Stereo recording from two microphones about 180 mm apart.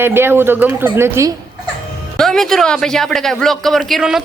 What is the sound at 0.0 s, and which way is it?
Speech, 10° right (ahead or behind).